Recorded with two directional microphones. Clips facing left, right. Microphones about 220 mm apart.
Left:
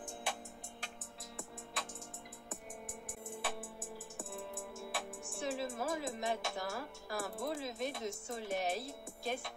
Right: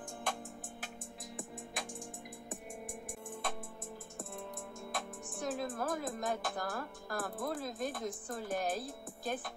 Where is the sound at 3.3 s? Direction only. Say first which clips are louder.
Even; 5° left (ahead or behind).